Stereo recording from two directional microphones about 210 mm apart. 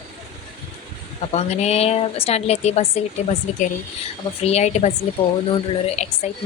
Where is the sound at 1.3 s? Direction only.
30° left (ahead or behind).